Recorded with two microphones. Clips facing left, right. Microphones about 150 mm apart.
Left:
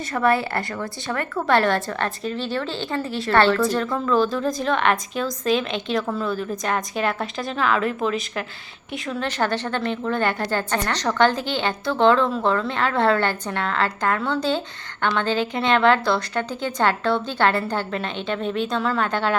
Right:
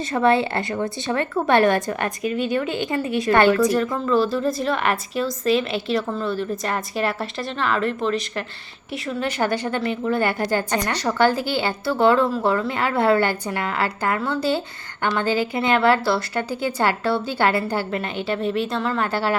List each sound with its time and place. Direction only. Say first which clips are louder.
0.1 s a woman's voice: right 2 dB; 25° right (ahead or behind)
4.1 s a woman's voice: right 1 dB; 5° right (ahead or behind)
9.0 s a woman's voice: right 1 dB; 10° right (ahead or behind)